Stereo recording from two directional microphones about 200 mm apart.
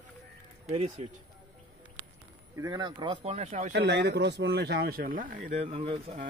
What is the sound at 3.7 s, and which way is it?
A man's voice, 60° right (ahead or behind).